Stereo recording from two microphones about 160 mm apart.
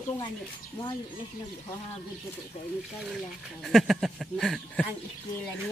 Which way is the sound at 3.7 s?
Centre (ahead or behind).